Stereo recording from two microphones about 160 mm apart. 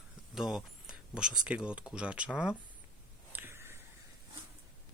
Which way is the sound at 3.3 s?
15° right (ahead or behind).